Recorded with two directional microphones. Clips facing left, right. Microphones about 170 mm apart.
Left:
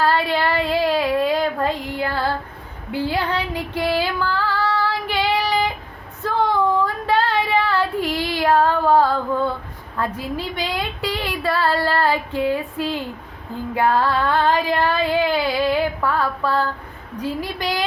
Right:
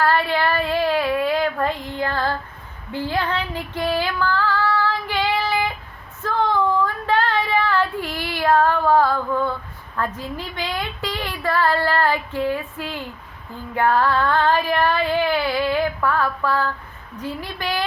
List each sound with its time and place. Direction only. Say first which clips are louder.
0.0 s child singing: even; 15° left (ahead or behind)
2.9 s female singing: left 2 dB; 10° left (ahead or behind)
6.8 s child singing: left 1 dB; 15° left (ahead or behind)
10.0 s a woman's voice: left 2 dB; 10° left (ahead or behind)